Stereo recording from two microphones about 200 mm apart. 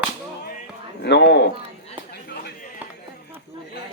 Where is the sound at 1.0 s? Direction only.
60° left (ahead or behind).